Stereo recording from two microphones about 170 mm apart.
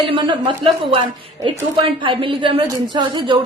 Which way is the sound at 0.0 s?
30° right (ahead or behind).